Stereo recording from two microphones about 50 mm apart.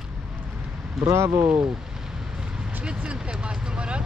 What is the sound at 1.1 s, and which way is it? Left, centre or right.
Speech, right.